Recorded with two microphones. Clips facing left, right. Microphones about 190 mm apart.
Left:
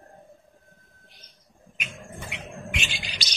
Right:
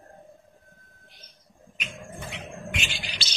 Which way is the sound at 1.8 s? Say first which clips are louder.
Right 1 dB; 15° left (ahead or behind).